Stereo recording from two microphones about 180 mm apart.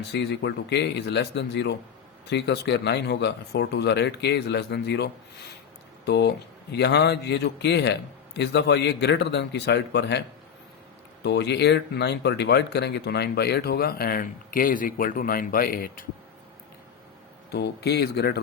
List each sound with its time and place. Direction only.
0.1 s speech: 70° left (ahead or behind)
17.5 s speech: 65° left (ahead or behind)